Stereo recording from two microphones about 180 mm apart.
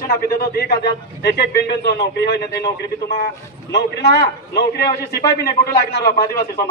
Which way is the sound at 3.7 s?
70° left (ahead or behind).